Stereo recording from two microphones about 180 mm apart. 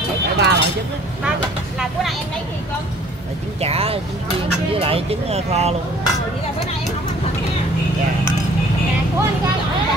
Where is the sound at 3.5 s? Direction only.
35° right (ahead or behind).